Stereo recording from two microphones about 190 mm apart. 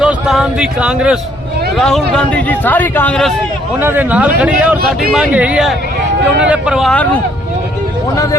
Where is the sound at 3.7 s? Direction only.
10° right (ahead or behind).